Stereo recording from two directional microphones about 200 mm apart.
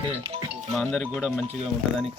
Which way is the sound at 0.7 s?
Centre (ahead or behind).